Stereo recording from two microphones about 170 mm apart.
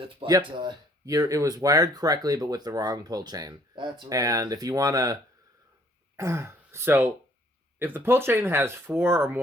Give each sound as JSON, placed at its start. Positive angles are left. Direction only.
{"t": 0.3, "sound": "speech", "side_deg": -25}
{"t": 6.1, "sound": "speech", "side_deg": -15}